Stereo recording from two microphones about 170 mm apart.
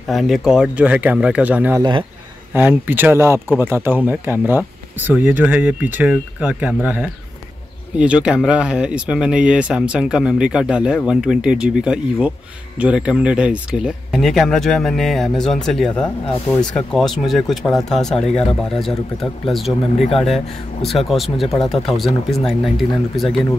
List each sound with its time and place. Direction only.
0.1 s speech: centre (ahead or behind)
1.8 s speech: 25° right (ahead or behind)
2.5 s speech: 10° right (ahead or behind)